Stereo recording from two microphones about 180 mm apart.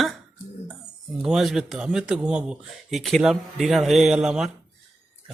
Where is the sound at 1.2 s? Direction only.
Centre (ahead or behind).